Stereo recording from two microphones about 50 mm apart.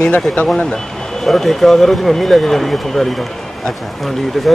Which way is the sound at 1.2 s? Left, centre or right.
Centre.